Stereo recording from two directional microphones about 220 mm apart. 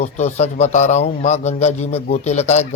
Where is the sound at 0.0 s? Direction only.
30° left (ahead or behind).